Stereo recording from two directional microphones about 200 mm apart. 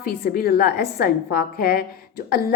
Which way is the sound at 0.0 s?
50° left (ahead or behind).